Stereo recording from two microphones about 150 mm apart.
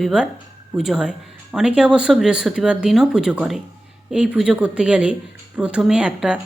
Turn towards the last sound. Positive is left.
turn(degrees=-5)  # may be behind; listen again after turning